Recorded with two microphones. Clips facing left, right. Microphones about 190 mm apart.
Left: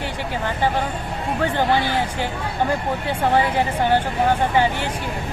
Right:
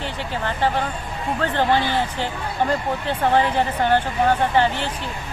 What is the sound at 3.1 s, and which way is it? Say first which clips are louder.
Speech: even; 10° left (ahead or behind).